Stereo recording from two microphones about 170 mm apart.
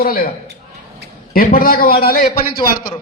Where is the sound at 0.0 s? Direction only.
60° left (ahead or behind).